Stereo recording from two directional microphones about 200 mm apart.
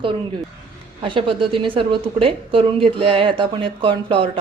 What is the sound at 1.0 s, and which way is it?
A woman's voice, 25° right (ahead or behind).